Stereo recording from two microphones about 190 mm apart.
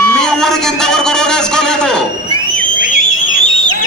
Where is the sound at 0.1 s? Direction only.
5° left (ahead or behind).